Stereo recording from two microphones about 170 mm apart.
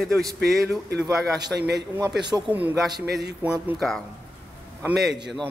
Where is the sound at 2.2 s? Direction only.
25° right (ahead or behind).